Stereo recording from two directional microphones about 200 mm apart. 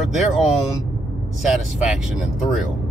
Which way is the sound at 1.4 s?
Centre (ahead or behind).